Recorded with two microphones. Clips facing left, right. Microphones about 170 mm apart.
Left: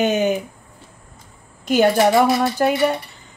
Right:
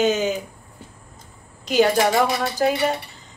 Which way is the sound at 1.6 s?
50° left (ahead or behind).